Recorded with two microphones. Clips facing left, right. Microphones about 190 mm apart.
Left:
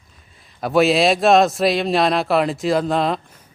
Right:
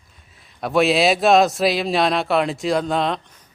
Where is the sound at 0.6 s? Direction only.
Centre (ahead or behind).